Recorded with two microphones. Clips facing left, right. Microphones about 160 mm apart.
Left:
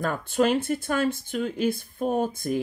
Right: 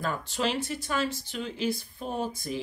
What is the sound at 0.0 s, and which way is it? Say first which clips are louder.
Speech: left 6 dB; 50° left (ahead or behind).